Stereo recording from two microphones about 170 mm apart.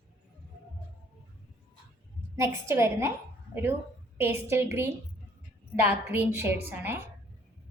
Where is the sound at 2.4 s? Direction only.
15° right (ahead or behind).